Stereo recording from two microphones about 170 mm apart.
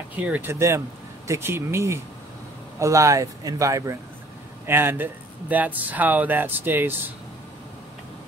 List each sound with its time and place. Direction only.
0.1 s speech: 10° right (ahead or behind)